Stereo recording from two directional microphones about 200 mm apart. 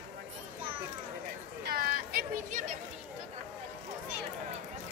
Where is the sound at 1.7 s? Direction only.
45° right (ahead or behind).